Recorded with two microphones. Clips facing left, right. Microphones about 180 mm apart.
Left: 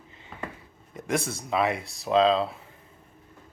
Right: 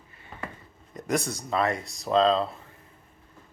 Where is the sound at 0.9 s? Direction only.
Centre (ahead or behind).